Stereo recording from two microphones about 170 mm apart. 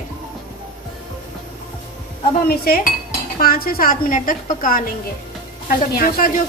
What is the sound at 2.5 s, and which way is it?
A woman's voice, 65° left (ahead or behind).